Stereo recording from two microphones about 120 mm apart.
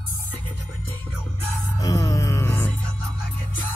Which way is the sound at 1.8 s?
25° left (ahead or behind).